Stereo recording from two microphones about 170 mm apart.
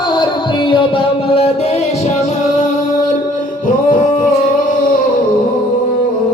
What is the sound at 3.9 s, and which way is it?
Music, 55° left (ahead or behind).